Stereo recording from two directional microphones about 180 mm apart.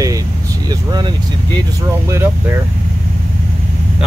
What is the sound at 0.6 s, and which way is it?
Vehicle, 20° right (ahead or behind).